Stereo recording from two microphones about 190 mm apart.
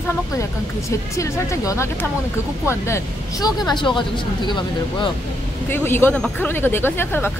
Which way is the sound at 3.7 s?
25° left (ahead or behind).